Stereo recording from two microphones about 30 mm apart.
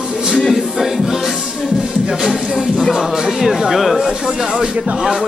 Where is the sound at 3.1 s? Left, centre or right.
Centre.